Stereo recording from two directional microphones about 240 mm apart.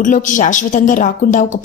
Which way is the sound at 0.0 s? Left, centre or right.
Left.